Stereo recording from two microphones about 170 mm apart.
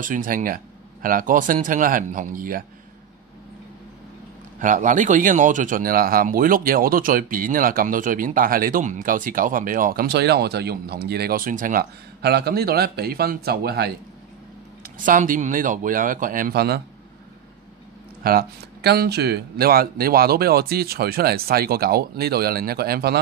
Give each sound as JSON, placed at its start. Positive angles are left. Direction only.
{"t": 0.0, "sound": "a man's voice", "side_deg": -50}
{"t": 4.6, "sound": "speech", "side_deg": -50}
{"t": 14.8, "sound": "a man's voice", "side_deg": -50}
{"t": 18.2, "sound": "speech", "side_deg": -65}